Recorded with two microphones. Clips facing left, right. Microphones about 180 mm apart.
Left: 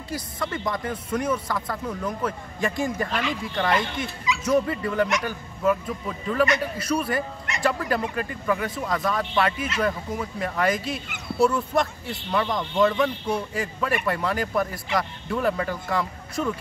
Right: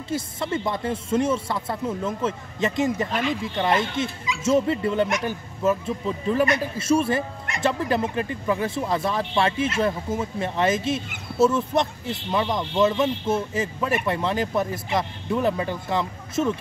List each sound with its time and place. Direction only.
0.1 s speech: 25° right (ahead or behind)